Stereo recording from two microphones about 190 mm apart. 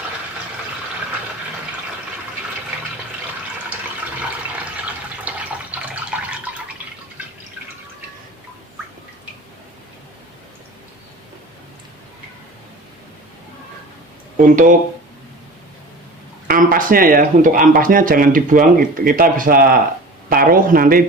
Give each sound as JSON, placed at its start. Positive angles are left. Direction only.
{"t": 5.2, "sound": "water tap", "side_deg": -10}
{"t": 14.3, "sound": "speech", "side_deg": -45}
{"t": 16.5, "sound": "speech", "side_deg": -45}